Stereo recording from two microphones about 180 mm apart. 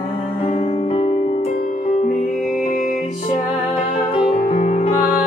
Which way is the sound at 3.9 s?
30° left (ahead or behind).